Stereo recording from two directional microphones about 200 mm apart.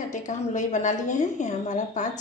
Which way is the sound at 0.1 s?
35° left (ahead or behind).